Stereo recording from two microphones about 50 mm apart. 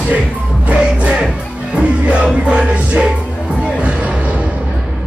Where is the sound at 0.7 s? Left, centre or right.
Right.